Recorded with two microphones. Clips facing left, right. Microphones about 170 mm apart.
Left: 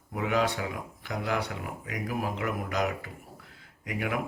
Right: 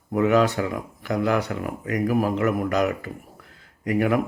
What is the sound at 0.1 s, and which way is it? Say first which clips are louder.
Speech: right 9 dB; 50° right (ahead or behind).